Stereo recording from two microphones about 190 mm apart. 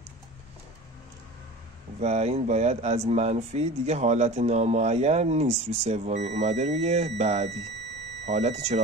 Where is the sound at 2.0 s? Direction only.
35° right (ahead or behind).